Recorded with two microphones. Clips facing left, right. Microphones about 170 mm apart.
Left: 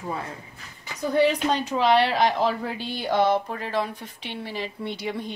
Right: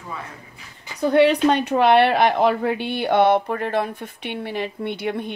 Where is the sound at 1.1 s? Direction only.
65° right (ahead or behind).